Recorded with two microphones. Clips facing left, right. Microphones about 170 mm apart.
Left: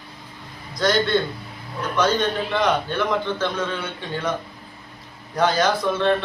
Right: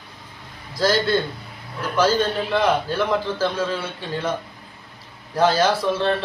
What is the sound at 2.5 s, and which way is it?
Speech, 30° right (ahead or behind).